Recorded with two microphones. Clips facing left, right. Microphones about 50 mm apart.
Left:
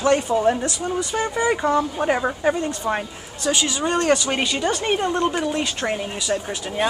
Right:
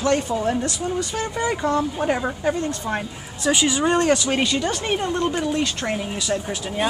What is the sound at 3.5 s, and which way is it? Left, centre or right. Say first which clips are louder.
Speech: right 3 dB; centre.